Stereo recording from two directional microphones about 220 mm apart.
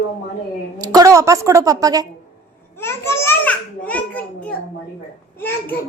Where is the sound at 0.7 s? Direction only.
15° right (ahead or behind).